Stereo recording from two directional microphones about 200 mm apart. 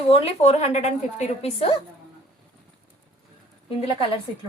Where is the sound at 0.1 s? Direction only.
30° left (ahead or behind).